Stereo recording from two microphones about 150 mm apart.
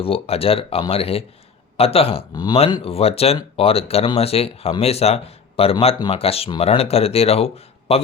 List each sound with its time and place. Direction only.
0.0 s speech: 40° left (ahead or behind)
2.3 s speech: 25° left (ahead or behind)